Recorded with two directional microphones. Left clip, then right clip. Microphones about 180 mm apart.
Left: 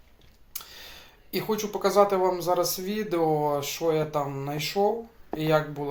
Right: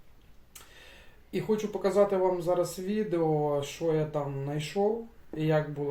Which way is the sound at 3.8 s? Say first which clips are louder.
Left 5 dB; 10° left (ahead or behind).